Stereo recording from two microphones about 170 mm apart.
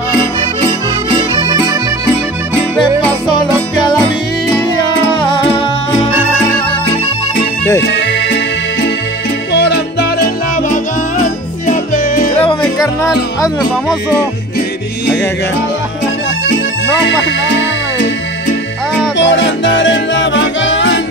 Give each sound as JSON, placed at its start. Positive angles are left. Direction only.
{"t": 5.1, "sound": "music", "side_deg": 30}
{"t": 7.8, "sound": "music", "side_deg": 90}
{"t": 9.5, "sound": "music", "side_deg": 85}
{"t": 11.6, "sound": "music", "side_deg": 50}
{"t": 12.4, "sound": "music", "side_deg": 25}
{"t": 17.0, "sound": "music", "side_deg": 90}
{"t": 19.1, "sound": "music", "side_deg": 90}